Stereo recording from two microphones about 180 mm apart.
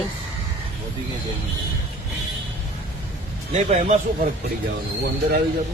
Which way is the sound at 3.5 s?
40° right (ahead or behind).